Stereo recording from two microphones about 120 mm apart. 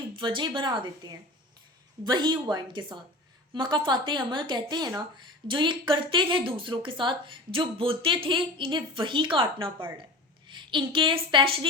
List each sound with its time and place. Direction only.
0.2 s a woman's voice: 40° right (ahead or behind)